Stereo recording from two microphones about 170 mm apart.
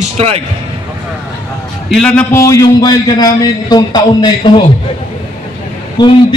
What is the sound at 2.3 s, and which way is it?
A man's voice, 20° left (ahead or behind).